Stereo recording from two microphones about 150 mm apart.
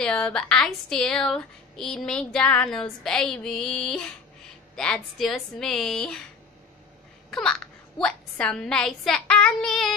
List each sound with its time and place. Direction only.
0.0 s a woman's voice: 5° left (ahead or behind)
7.2 s babbling: 5° left (ahead or behind)
8.0 s a woman's voice: 5° left (ahead or behind)